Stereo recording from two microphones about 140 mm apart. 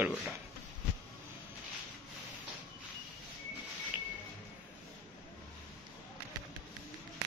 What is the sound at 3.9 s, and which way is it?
Music, 10° right (ahead or behind).